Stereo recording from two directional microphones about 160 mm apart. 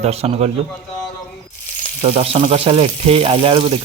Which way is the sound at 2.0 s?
40° right (ahead or behind).